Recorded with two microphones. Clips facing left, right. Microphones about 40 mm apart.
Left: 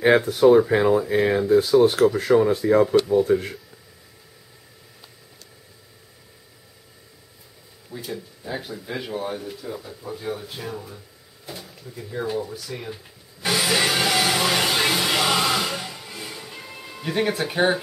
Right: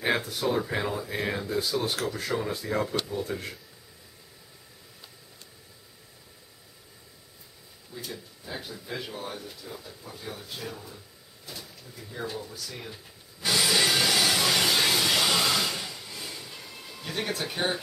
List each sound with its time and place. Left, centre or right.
0.0 s speech: centre
8.0 s speech: centre
11.4 s a sound: left